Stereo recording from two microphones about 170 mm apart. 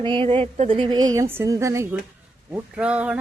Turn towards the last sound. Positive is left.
turn(degrees=-5)  # may be behind; listen again after turning